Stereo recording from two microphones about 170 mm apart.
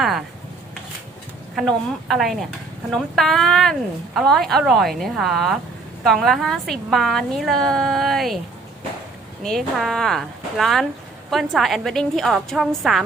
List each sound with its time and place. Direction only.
1.5 s a woman's voice: centre (ahead or behind)
9.4 s a woman's voice: centre (ahead or behind)